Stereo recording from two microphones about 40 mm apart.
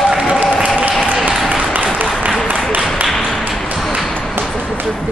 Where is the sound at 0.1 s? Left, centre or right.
Centre.